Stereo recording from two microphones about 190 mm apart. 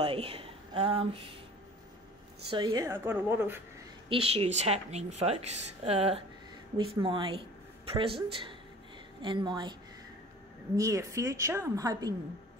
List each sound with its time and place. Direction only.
0.0 s speech: 30° right (ahead or behind)
2.5 s a woman's voice: 20° right (ahead or behind)
4.1 s a woman's voice: 30° right (ahead or behind)
10.8 s a woman's voice: 15° right (ahead or behind)